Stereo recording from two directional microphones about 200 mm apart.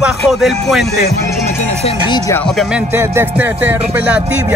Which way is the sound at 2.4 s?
Centre (ahead or behind).